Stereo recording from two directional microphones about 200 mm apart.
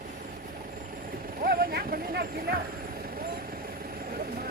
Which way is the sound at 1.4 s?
50° right (ahead or behind).